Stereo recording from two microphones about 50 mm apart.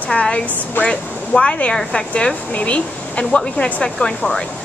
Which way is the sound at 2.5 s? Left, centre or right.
Left.